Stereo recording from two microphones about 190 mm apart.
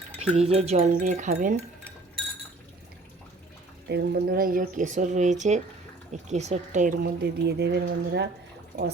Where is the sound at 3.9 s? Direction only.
55° right (ahead or behind).